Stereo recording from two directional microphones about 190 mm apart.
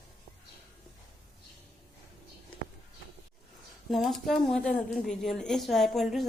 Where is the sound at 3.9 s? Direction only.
Centre (ahead or behind).